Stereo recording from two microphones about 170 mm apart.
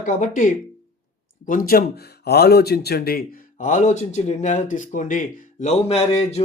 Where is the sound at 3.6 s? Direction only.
45° left (ahead or behind).